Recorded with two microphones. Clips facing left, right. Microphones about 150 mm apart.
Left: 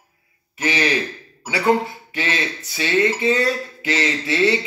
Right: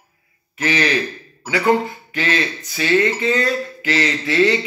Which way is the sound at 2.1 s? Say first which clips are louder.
Right 4 dB; 15° left (ahead or behind).